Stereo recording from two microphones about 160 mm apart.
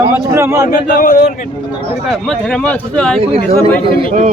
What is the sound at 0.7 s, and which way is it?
Speech, 60° left (ahead or behind).